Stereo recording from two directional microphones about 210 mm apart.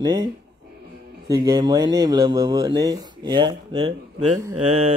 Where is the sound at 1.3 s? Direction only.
20° right (ahead or behind).